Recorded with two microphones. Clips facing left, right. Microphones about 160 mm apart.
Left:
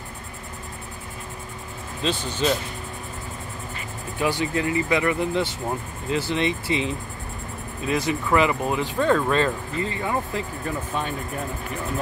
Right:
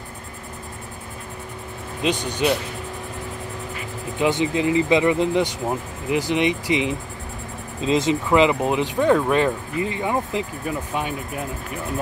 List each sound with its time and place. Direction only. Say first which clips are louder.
2.0 s speech: right 3 dB; 15° right (ahead or behind)
4.2 s speech: right 4 dB; 20° right (ahead or behind)